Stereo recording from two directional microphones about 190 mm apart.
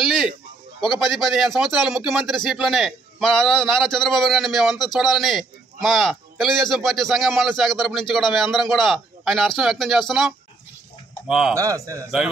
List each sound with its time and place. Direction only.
0.9 s speech: centre (ahead or behind)
11.5 s a man's voice: 15° right (ahead or behind)